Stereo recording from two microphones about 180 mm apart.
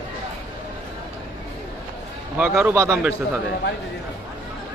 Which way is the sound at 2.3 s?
5° right (ahead or behind).